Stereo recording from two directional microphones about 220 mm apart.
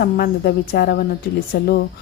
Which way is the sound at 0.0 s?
45° left (ahead or behind).